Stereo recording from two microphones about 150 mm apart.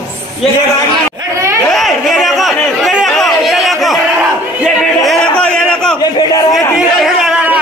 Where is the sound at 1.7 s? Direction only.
Centre (ahead or behind).